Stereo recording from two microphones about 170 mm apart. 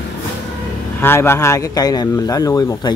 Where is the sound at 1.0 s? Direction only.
15° left (ahead or behind).